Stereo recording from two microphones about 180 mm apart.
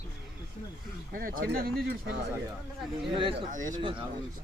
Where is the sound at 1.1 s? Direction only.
50° right (ahead or behind).